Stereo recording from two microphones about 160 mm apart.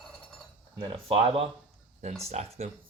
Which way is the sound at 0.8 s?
35° right (ahead or behind).